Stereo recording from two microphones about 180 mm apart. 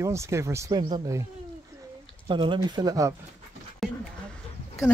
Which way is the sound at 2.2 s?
25° right (ahead or behind).